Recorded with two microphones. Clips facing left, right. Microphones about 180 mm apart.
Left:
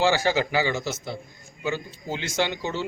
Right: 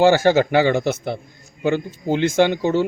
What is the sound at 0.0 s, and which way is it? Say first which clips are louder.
A man's voice: right 8 dB; 50° right (ahead or behind).